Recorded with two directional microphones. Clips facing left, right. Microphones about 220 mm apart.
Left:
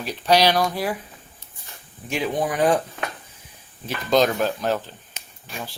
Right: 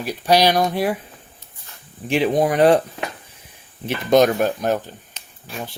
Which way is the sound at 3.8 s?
25° right (ahead or behind).